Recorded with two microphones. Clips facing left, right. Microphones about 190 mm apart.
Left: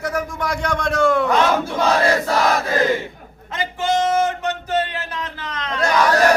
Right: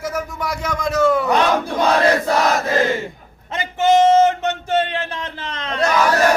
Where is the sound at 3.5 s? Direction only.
25° right (ahead or behind).